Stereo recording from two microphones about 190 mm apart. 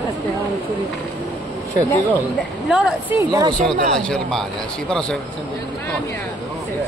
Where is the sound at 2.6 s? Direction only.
5° right (ahead or behind).